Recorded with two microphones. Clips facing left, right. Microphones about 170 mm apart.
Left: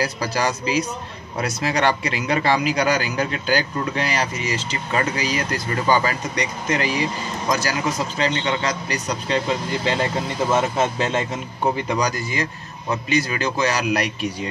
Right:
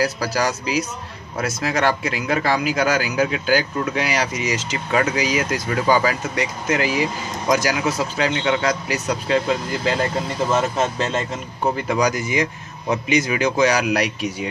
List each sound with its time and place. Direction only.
0.0 s a man's voice: 5° right (ahead or behind)
10.5 s speech: 10° left (ahead or behind)
11.6 s a man's voice: 5° right (ahead or behind)
12.2 s a man's voice: 20° right (ahead or behind)